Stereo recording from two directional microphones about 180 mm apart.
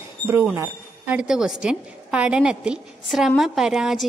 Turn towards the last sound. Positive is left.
turn(degrees=0)  # may be behind; listen again after turning